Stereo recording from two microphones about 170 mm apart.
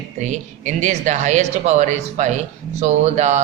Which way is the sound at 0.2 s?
45° right (ahead or behind).